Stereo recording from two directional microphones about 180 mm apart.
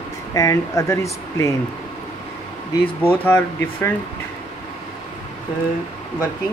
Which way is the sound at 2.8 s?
10° left (ahead or behind).